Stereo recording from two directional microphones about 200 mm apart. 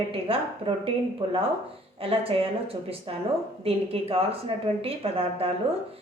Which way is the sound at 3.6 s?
30° right (ahead or behind).